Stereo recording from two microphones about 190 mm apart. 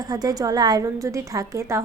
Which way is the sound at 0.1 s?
20° right (ahead or behind).